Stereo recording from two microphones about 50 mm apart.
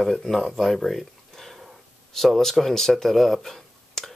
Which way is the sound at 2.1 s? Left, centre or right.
Centre.